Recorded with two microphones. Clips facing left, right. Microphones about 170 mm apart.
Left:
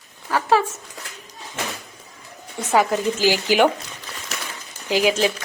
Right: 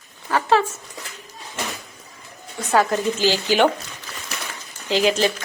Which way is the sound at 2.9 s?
10° left (ahead or behind).